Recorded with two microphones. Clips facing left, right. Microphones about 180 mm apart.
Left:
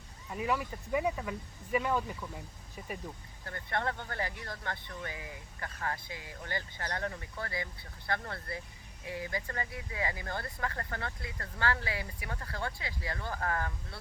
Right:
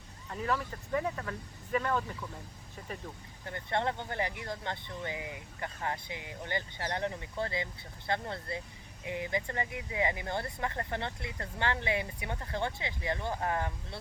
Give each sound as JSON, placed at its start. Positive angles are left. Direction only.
{"t": 0.3, "sound": "speech", "side_deg": 10}
{"t": 3.4, "sound": "speech", "side_deg": -20}